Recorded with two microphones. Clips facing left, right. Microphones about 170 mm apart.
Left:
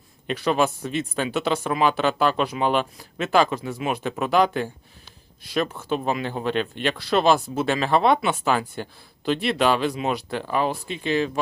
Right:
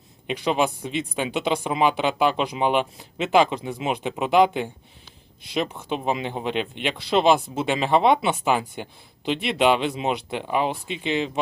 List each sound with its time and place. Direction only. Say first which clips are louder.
0.3 s speech: left 1 dB; 15° right (ahead or behind)